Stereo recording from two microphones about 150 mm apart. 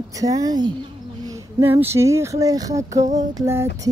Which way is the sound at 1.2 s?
15° right (ahead or behind).